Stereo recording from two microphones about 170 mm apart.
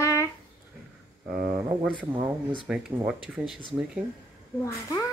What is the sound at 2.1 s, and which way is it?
Speech, 15° right (ahead or behind).